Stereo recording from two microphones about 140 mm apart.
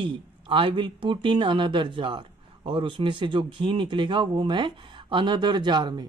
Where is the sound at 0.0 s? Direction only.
35° right (ahead or behind).